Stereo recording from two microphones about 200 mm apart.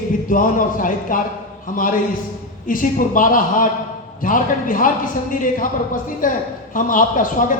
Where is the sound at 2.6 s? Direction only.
45° left (ahead or behind).